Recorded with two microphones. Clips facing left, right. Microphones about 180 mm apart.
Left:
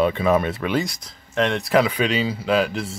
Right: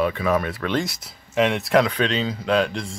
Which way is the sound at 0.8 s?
5° right (ahead or behind).